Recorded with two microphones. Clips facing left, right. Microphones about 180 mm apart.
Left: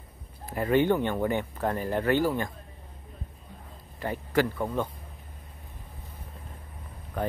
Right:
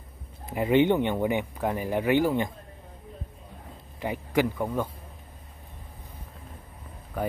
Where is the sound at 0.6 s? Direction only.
20° right (ahead or behind).